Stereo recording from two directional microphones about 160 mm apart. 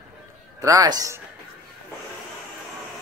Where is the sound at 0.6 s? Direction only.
20° right (ahead or behind).